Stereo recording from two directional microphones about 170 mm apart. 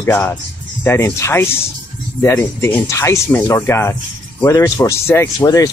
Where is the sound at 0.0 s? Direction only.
15° left (ahead or behind).